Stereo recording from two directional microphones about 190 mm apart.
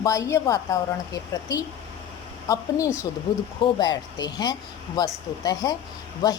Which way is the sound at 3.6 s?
25° left (ahead or behind).